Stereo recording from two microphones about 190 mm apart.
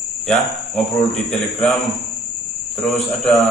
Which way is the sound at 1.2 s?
Centre (ahead or behind).